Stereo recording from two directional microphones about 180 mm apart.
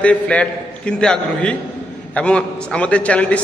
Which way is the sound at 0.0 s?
5° left (ahead or behind).